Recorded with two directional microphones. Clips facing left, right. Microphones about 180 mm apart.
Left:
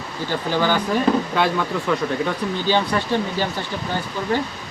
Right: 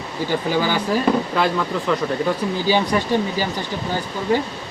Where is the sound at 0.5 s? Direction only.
10° right (ahead or behind).